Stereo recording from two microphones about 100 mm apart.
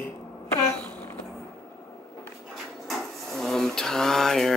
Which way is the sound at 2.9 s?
Centre (ahead or behind).